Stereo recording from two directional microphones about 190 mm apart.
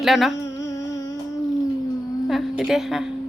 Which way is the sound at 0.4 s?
15° left (ahead or behind).